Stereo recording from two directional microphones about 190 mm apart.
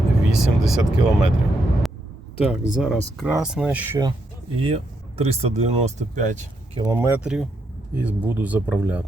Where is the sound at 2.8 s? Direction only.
Centre (ahead or behind).